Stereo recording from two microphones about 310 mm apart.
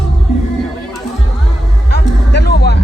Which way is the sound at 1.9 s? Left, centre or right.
Left.